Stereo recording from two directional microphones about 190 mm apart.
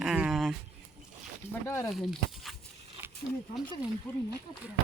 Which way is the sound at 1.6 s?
15° left (ahead or behind).